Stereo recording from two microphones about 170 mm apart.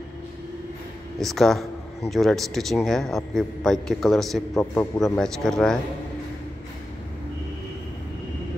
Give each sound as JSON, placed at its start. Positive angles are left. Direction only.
{"t": 1.2, "sound": "speech", "side_deg": 0}
{"t": 4.6, "sound": "a man's voice", "side_deg": 20}
{"t": 5.0, "sound": "speech", "side_deg": 0}